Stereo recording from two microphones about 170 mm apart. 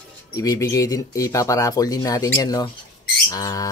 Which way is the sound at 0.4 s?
20° left (ahead or behind).